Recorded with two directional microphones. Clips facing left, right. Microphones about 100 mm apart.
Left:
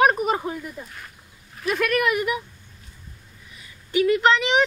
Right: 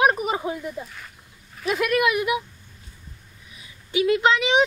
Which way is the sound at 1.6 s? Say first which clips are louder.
Right 1 dB; 5° right (ahead or behind).